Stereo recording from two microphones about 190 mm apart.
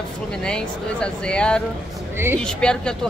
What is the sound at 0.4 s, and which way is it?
Speech, 5° left (ahead or behind).